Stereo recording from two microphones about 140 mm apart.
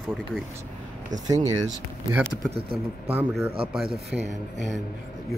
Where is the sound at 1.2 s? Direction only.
25° right (ahead or behind).